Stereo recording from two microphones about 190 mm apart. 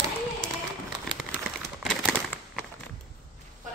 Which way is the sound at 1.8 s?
Centre (ahead or behind).